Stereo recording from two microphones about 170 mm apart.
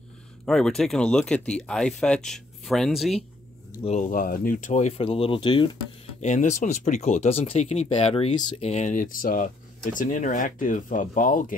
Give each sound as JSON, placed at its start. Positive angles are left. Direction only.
{"t": 0.5, "sound": "speech", "side_deg": 0}
{"t": 3.8, "sound": "speech", "side_deg": 45}
{"t": 6.2, "sound": "speech", "side_deg": 45}